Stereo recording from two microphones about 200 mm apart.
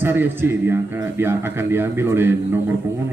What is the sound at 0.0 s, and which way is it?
A man's voice, 10° right (ahead or behind).